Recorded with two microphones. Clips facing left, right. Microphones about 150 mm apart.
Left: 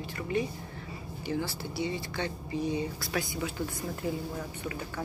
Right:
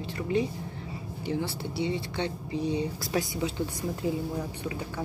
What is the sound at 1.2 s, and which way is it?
Speech, 25° right (ahead or behind).